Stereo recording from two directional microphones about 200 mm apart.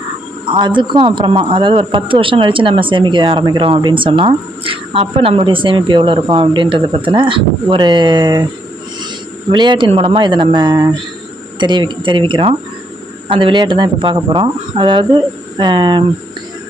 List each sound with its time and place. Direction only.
0.4 s speech: 25° right (ahead or behind)
9.5 s speech: 25° right (ahead or behind)